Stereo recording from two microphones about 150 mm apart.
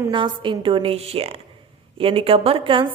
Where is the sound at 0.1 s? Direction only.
35° right (ahead or behind).